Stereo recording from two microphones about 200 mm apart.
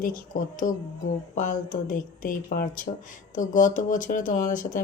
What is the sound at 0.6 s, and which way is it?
Speech, 40° left (ahead or behind).